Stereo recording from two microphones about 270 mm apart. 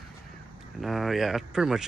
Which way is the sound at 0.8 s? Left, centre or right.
Centre.